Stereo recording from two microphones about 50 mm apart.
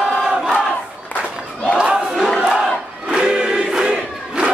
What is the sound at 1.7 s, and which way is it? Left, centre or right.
Crowd, centre.